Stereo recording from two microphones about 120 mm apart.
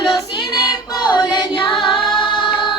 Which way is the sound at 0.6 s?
35° left (ahead or behind).